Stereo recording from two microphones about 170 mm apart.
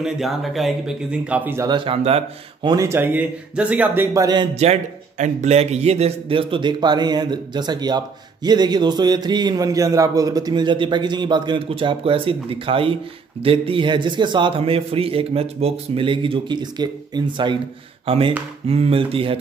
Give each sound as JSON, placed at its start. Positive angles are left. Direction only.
{"t": 0.0, "sound": "speech", "side_deg": 0}
{"t": 1.7, "sound": "a man's voice", "side_deg": -35}
{"t": 2.7, "sound": "speech", "side_deg": -15}
{"t": 4.6, "sound": "a man's voice", "side_deg": -40}